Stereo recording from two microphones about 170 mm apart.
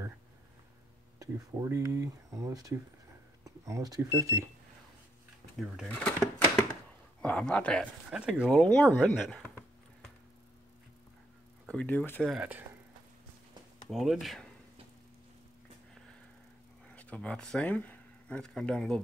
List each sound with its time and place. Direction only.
1.2 s speech: 20° right (ahead or behind)
5.9 s speech: 5° left (ahead or behind)
8.1 s speech: 5° right (ahead or behind)
11.6 s speech: 5° left (ahead or behind)
13.8 s speech: centre (ahead or behind)
16.9 s speech: 10° left (ahead or behind)